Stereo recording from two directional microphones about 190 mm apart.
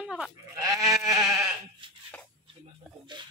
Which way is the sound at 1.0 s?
20° right (ahead or behind).